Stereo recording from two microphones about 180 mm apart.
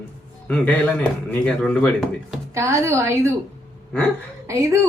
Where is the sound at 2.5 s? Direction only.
15° right (ahead or behind).